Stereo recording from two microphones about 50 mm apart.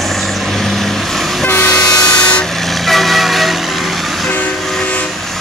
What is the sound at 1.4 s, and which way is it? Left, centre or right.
Vehicle, left.